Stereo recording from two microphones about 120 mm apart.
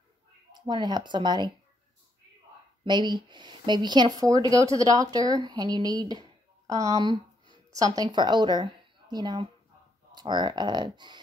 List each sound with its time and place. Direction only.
0.5 s a woman's voice: 40° right (ahead or behind)
2.8 s a woman's voice: 40° right (ahead or behind)